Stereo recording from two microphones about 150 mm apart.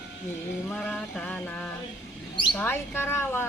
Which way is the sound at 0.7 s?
10° left (ahead or behind).